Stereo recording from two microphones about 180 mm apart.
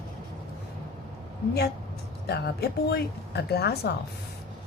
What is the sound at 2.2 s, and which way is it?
Speech, 65° left (ahead or behind).